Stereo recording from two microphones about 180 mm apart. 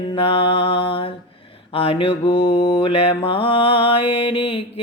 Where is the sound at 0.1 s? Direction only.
30° left (ahead or behind).